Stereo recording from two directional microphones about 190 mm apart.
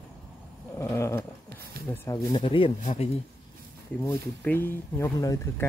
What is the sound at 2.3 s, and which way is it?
Speech, 25° left (ahead or behind).